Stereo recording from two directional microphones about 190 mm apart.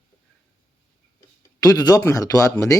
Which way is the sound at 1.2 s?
20° left (ahead or behind).